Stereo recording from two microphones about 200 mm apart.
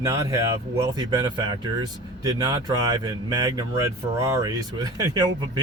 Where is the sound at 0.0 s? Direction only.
15° right (ahead or behind).